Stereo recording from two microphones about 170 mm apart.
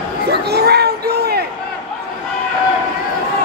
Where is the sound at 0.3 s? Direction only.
75° right (ahead or behind).